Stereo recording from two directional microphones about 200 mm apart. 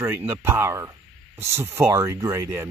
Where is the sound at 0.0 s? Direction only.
10° right (ahead or behind).